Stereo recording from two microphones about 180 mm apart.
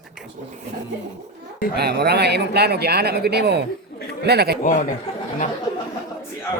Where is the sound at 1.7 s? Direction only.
65° right (ahead or behind).